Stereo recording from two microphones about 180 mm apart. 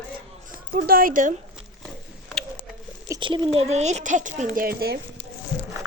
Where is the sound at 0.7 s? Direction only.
55° right (ahead or behind).